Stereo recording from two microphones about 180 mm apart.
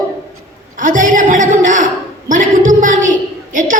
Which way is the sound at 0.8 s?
45° right (ahead or behind).